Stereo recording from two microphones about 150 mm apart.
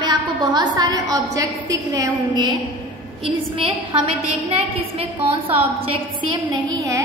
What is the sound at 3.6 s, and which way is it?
A woman's voice, 40° right (ahead or behind).